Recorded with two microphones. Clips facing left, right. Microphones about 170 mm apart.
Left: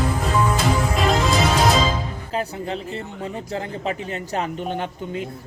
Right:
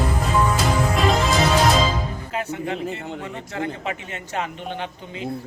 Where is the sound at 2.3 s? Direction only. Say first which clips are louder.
Left 1 dB; 35° left (ahead or behind).